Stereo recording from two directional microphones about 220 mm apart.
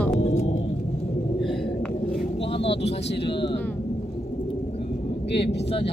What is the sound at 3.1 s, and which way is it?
Speech, 50° left (ahead or behind).